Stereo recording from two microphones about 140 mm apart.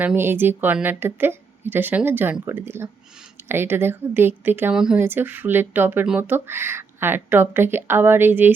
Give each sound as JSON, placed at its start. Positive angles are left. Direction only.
{"t": 0.0, "sound": "a woman's voice", "side_deg": -15}